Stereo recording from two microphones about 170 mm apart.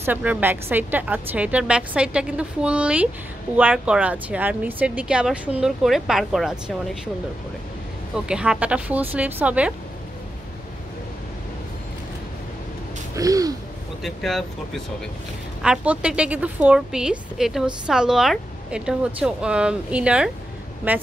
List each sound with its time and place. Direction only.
0.0 s a woman's voice: 10° right (ahead or behind)
8.3 s a woman's voice: 5° right (ahead or behind)
13.1 s gasp: 20° right (ahead or behind)
14.0 s a woman's voice: centre (ahead or behind)
15.6 s a woman's voice: 5° right (ahead or behind)